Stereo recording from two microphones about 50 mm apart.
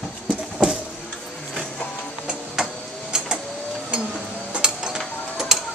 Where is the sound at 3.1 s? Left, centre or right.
Centre.